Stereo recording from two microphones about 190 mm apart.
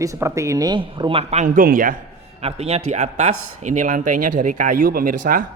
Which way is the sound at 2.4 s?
30° right (ahead or behind).